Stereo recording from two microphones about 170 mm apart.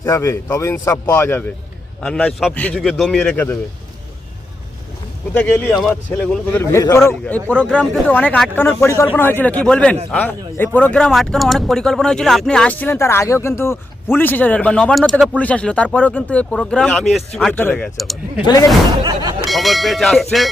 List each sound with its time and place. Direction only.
0.0 s speech: 15° left (ahead or behind)
5.3 s speech: 10° left (ahead or behind)
18.4 s speech: 20° left (ahead or behind)
19.5 s speech: centre (ahead or behind)